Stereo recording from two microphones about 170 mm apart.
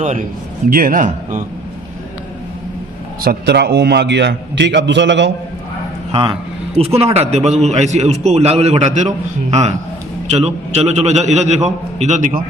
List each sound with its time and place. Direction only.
0.7 s a man's voice: 55° right (ahead or behind)
3.2 s a man's voice: 70° right (ahead or behind); by 5.3 s 90° right
6.1 s a man's voice: 30° right (ahead or behind); by 12.4 s 45° right (ahead or behind)